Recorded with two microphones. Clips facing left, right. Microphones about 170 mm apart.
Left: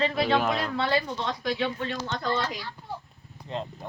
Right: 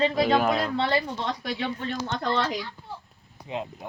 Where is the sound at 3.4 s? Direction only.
10° right (ahead or behind).